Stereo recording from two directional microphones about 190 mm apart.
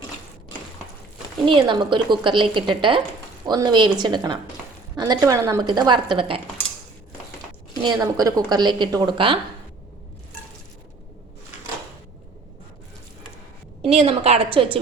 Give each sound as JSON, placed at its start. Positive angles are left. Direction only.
{"t": 1.5, "sound": "speech", "side_deg": -25}
{"t": 7.8, "sound": "speech", "side_deg": -20}
{"t": 13.8, "sound": "a woman's voice", "side_deg": -30}